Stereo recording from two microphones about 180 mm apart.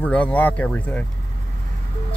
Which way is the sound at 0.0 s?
5° left (ahead or behind).